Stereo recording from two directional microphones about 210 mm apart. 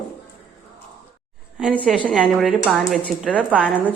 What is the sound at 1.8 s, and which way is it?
A woman's voice, centre (ahead or behind).